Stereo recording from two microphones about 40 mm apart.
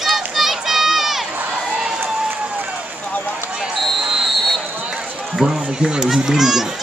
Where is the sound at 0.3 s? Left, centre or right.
Centre.